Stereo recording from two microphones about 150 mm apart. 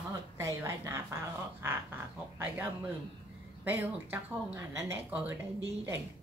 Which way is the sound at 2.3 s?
10° right (ahead or behind).